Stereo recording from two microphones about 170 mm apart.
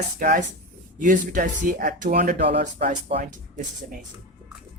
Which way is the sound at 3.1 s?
35° right (ahead or behind).